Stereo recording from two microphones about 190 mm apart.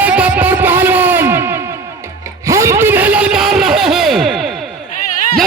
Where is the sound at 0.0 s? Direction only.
10° right (ahead or behind).